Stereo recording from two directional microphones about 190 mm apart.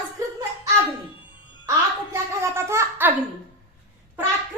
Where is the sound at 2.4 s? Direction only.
15° right (ahead or behind).